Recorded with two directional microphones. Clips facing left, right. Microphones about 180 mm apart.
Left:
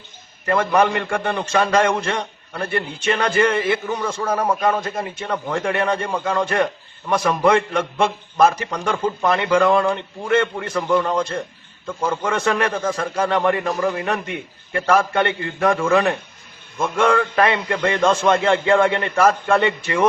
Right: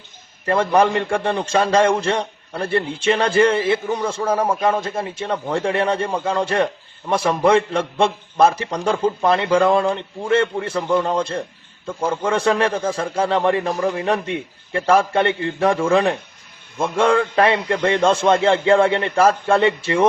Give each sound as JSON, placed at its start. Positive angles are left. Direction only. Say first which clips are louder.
{"t": 0.4, "sound": "a man's voice", "louder": "right 1 dB", "side_deg": -30}
{"t": 10.8, "sound": "a man's voice", "louder": "left 1 dB", "side_deg": -10}
{"t": 11.2, "sound": "a man's voice", "louder": "even", "side_deg": -30}
{"t": 13.7, "sound": "a man's voice", "louder": "even", "side_deg": -15}
{"t": 14.0, "sound": "a man's voice", "louder": "right 3 dB", "side_deg": -30}
{"t": 16.8, "sound": "a man's voice", "louder": "right 1 dB", "side_deg": -30}